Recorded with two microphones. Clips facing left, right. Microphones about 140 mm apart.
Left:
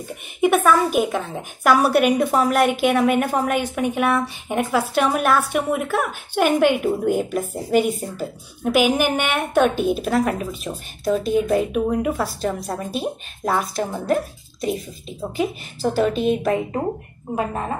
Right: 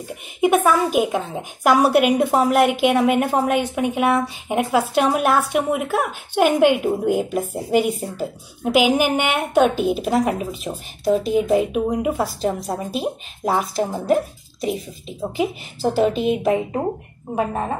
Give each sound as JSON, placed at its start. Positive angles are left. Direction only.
{"t": 0.4, "sound": "a woman's voice", "side_deg": -15}